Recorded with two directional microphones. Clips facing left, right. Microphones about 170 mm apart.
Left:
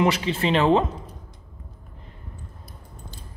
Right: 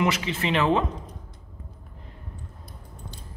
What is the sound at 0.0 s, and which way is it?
Speech, 30° left (ahead or behind).